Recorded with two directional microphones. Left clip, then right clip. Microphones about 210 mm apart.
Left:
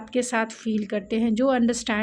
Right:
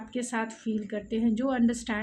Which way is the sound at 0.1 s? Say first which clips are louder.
Left 8 dB; 40° left (ahead or behind).